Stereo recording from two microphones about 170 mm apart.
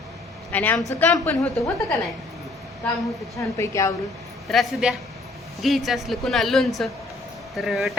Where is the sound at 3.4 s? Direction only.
20° left (ahead or behind).